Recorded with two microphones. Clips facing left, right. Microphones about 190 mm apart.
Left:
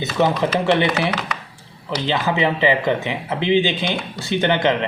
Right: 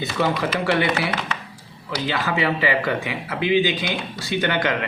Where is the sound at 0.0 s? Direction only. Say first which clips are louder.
Left 4 dB; 25° left (ahead or behind).